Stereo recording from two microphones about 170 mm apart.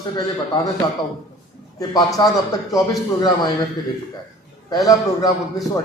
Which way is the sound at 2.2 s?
25° left (ahead or behind).